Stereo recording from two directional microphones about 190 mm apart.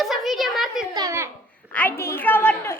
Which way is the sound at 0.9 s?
15° right (ahead or behind).